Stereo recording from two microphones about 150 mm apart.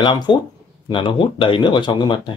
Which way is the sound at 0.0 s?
30° left (ahead or behind).